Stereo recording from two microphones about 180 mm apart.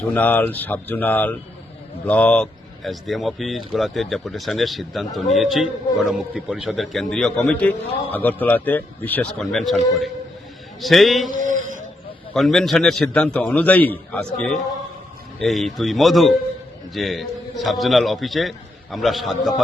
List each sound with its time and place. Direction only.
0.1 s speech: 10° left (ahead or behind)
10.8 s speech: centre (ahead or behind)
11.3 s mantra: 45° right (ahead or behind)
12.3 s speech: centre (ahead or behind)